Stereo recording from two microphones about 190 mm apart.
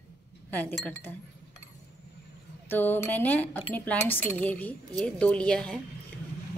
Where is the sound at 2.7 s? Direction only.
10° left (ahead or behind).